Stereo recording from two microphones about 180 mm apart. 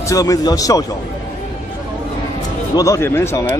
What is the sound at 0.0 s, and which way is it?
Speech, 20° left (ahead or behind).